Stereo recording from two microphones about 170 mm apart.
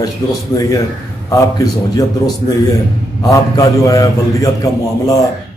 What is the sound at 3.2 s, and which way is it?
Speech, 20° left (ahead or behind).